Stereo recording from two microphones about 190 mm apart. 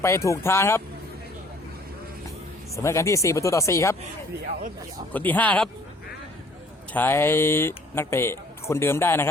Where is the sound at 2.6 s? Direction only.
15° left (ahead or behind).